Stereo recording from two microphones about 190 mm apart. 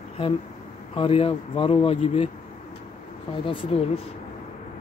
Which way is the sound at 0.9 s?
30° left (ahead or behind).